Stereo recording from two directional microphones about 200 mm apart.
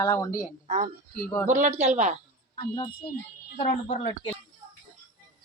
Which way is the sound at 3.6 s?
35° left (ahead or behind).